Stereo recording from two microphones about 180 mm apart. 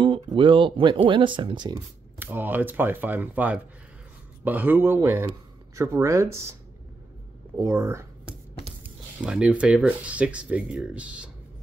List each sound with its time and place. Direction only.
0.0 s speech: 25° right (ahead or behind)
2.1 s speech: 10° right (ahead or behind)
7.5 s speech: 15° right (ahead or behind)